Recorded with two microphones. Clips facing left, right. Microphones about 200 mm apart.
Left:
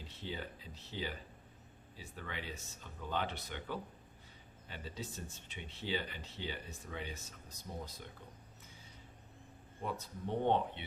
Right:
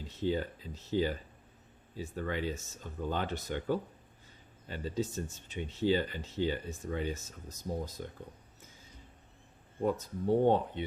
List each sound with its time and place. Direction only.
0.1 s speech: 45° right (ahead or behind)
9.8 s speech: 40° right (ahead or behind)